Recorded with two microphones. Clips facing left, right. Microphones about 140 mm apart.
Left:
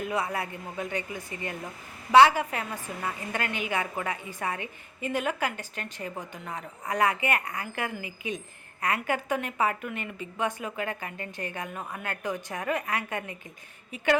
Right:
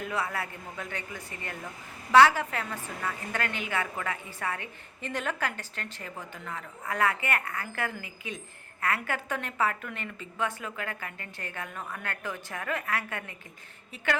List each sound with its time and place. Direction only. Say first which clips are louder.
0.0 s a woman's voice: left 3 dB; 15° left (ahead or behind)